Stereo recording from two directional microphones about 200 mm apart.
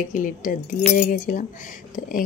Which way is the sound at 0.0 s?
40° left (ahead or behind).